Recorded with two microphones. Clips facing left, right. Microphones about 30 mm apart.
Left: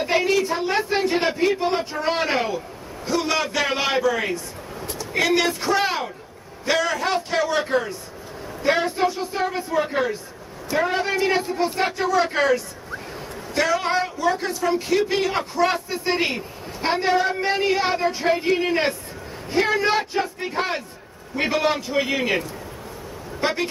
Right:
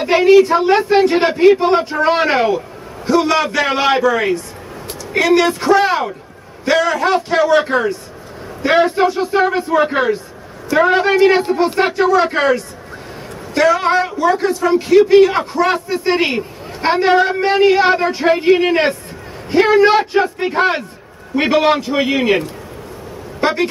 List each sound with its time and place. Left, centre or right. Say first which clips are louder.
0.0 s a man's voice: right 11 dB; right
3.6 s a man's voice: right 6 dB; right
5.2 s a man's voice: right 7 dB; centre
5.5 s a man's voice: right 9 dB; right
5.8 s a man's voice: right 8 dB; centre; by 12.1 s right
12.1 s a man's voice: right 6 dB; right
13.8 s a man's voice: right 7 dB; right
15.2 s a man's voice: right 8 dB; right
15.6 s a man's voice: right 5 dB; centre
16.0 s a man's voice: right 7 dB; right
23.4 s speech: right 7 dB; right